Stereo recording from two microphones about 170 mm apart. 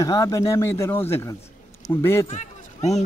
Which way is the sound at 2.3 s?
40° left (ahead or behind).